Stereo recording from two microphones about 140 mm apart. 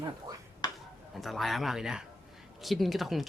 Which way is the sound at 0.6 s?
25° left (ahead or behind).